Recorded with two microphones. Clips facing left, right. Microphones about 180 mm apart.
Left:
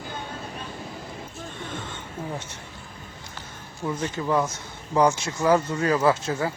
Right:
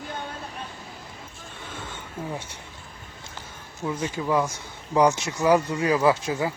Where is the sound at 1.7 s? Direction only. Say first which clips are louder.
Left 2 dB; 10° right (ahead or behind).